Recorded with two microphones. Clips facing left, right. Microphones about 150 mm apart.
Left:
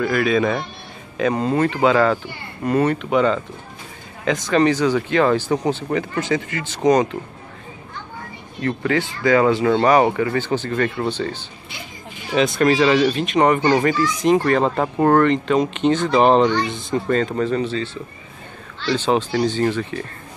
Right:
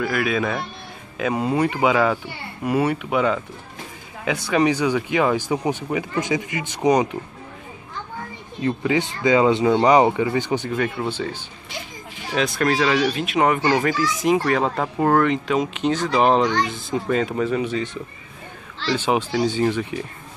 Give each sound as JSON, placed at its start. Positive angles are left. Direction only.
{"t": 0.0, "sound": "speech", "side_deg": -5}
{"t": 8.6, "sound": "speech", "side_deg": -15}
{"t": 18.9, "sound": "speech", "side_deg": -10}